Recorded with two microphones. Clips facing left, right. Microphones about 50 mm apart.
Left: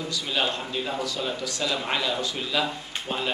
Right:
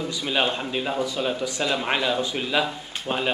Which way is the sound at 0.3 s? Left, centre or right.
Right.